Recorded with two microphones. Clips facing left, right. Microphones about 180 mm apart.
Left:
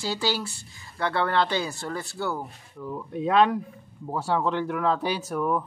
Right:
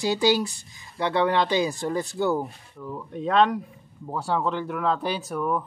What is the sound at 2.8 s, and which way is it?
Speech, 5° left (ahead or behind).